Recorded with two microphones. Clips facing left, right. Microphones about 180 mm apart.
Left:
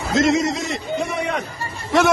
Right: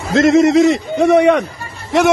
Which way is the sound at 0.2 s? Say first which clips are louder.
Right 10 dB; 60° right (ahead or behind).